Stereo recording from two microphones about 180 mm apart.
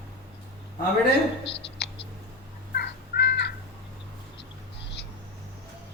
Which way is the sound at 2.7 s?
65° left (ahead or behind).